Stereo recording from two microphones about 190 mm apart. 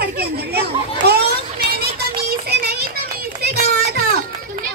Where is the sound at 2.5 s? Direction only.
55° right (ahead or behind).